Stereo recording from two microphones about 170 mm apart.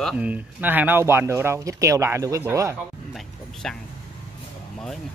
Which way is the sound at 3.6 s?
5° left (ahead or behind).